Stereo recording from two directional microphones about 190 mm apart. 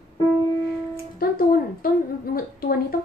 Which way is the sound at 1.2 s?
50° left (ahead or behind).